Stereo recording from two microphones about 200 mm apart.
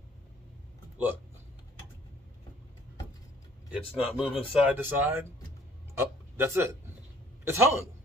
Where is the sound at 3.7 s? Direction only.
5° right (ahead or behind).